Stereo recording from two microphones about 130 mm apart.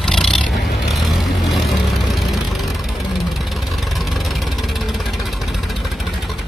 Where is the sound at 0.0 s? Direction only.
5° left (ahead or behind).